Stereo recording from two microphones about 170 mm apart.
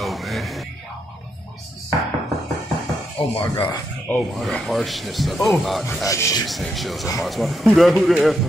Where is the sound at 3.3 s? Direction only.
35° left (ahead or behind).